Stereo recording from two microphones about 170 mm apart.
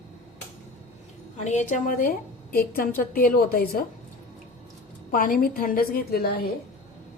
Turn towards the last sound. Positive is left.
turn(degrees=65)  # may be behind; listen again after turning